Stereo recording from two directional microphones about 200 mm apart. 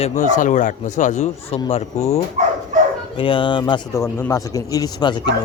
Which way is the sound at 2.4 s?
35° right (ahead or behind).